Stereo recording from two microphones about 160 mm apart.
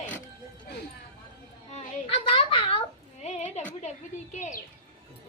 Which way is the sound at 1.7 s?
40° left (ahead or behind).